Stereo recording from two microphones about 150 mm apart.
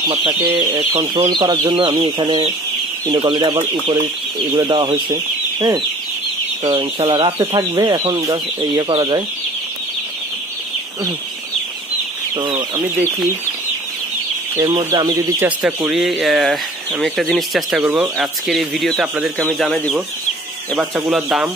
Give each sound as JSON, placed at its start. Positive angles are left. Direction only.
{"t": 0.0, "sound": "speech", "side_deg": -35}
{"t": 12.4, "sound": "speech", "side_deg": -25}
{"t": 14.6, "sound": "speech", "side_deg": -20}
{"t": 15.6, "sound": "speech", "side_deg": -5}
{"t": 17.8, "sound": "speech", "side_deg": -10}
{"t": 18.1, "sound": "speech", "side_deg": 0}